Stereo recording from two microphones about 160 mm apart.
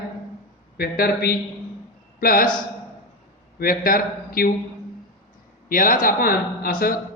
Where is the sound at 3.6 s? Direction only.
65° left (ahead or behind).